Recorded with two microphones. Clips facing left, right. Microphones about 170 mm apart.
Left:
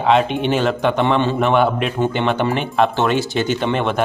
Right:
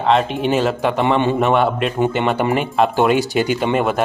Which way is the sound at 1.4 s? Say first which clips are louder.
Even; centre (ahead or behind).